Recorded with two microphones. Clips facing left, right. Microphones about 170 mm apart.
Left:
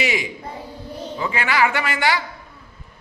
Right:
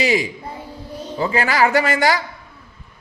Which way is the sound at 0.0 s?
35° right (ahead or behind).